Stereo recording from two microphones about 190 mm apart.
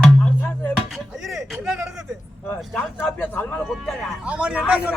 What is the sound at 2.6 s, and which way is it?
Speech, 10° left (ahead or behind).